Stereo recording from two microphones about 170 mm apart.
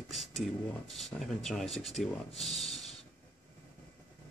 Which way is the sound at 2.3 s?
35° left (ahead or behind).